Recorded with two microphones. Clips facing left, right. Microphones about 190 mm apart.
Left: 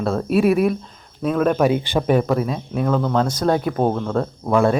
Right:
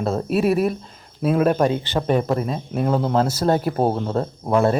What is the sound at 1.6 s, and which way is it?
Speech, 15° left (ahead or behind).